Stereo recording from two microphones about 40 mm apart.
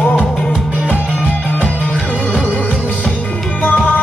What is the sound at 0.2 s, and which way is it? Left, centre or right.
Music, left.